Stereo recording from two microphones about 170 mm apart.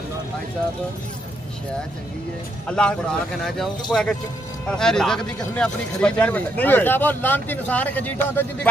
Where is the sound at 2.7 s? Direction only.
5° left (ahead or behind).